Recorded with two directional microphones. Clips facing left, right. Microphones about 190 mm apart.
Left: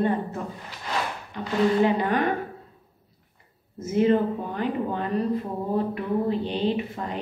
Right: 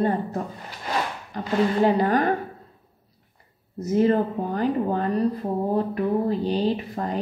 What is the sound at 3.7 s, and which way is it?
A woman's voice, 40° right (ahead or behind).